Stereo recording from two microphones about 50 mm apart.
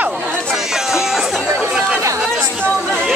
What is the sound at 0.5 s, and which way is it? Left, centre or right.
Music, centre.